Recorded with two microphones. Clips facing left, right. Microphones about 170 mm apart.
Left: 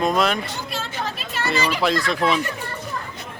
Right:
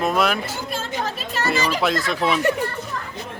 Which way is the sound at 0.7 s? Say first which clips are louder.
Right 3 dB; 45° right (ahead or behind).